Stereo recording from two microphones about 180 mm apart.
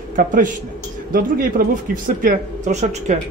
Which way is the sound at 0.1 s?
50° right (ahead or behind).